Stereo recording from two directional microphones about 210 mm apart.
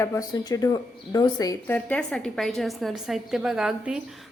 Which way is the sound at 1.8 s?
5° left (ahead or behind).